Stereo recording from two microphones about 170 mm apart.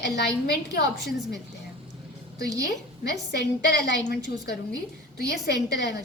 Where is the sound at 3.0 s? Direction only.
80° left.